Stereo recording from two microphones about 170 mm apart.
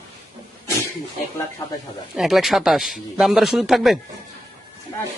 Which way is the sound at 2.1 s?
Centre (ahead or behind).